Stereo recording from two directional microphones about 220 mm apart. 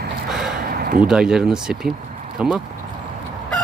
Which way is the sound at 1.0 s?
5° right (ahead or behind).